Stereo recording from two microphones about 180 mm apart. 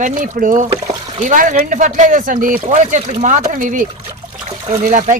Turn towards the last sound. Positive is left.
turn(degrees=-45)  # may be behind; listen again after turning